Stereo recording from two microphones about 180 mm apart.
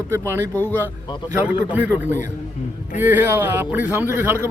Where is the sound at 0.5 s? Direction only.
10° left (ahead or behind).